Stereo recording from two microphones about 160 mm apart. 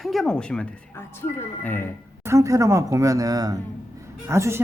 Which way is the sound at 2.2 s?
20° right (ahead or behind).